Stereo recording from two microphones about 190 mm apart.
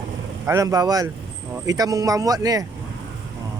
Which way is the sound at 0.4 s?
15° right (ahead or behind).